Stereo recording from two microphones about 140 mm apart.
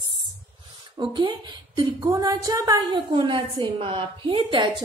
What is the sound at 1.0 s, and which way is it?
A woman's voice, 30° right (ahead or behind).